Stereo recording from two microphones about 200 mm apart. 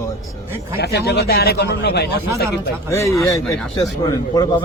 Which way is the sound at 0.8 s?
55° left (ahead or behind).